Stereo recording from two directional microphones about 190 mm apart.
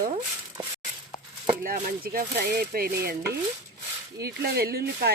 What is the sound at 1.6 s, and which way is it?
Speech, 50° right (ahead or behind).